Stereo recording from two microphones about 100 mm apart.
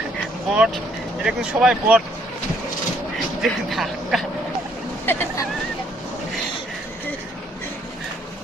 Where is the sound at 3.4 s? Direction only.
Centre (ahead or behind).